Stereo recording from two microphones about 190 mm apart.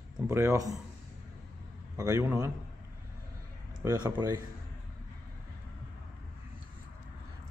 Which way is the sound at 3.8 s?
20° right (ahead or behind).